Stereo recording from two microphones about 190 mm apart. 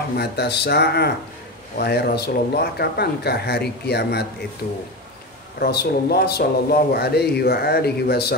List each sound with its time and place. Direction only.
0.2 s speech: 60° left (ahead or behind)